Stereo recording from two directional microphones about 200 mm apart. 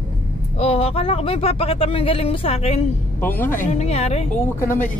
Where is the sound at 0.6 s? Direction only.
30° left (ahead or behind).